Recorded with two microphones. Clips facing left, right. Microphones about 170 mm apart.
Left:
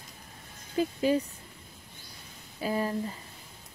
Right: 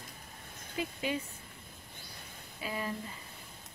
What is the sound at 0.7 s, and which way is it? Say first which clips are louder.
Speech: left 9 dB; 35° left (ahead or behind).